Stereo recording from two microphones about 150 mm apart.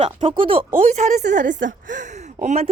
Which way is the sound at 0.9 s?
50° right (ahead or behind).